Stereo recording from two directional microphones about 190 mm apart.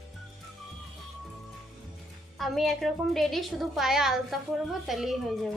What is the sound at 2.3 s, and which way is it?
A woman's voice, centre (ahead or behind).